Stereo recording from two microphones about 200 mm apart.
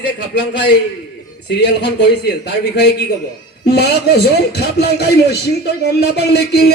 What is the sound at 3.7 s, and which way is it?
A man's voice, 55° left (ahead or behind).